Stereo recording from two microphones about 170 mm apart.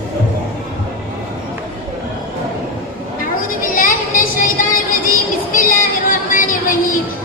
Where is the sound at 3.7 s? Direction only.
55° left (ahead or behind).